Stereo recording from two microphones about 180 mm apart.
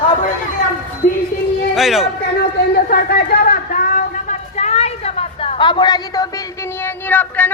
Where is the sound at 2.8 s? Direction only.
55° left (ahead or behind); by 6.3 s 20° left (ahead or behind).